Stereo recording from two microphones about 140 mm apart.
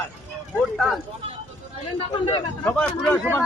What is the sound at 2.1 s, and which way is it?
Speech, 35° left (ahead or behind).